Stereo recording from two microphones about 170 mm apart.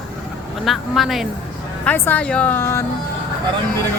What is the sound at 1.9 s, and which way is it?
Speech, 10° left (ahead or behind).